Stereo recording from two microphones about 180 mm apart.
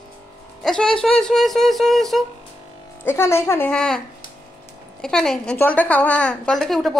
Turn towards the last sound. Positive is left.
turn(degrees=0)  # may be behind; listen again after turning